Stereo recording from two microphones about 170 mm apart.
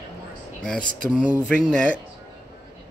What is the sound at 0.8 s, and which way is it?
Speech, 50° right (ahead or behind).